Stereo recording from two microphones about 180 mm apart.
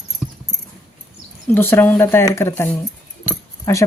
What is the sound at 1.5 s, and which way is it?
Speech, 10° left (ahead or behind).